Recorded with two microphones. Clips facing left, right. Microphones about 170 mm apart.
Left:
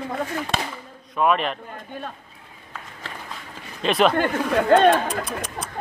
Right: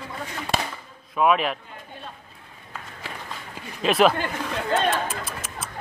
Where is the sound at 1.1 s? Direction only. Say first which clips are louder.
Even; 5° right (ahead or behind).